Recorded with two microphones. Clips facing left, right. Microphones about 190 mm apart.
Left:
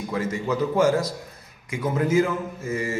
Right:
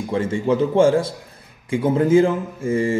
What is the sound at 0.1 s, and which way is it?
A man's voice, 30° right (ahead or behind).